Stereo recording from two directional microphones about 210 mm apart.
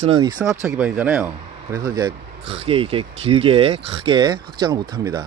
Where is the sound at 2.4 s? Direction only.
25° right (ahead or behind).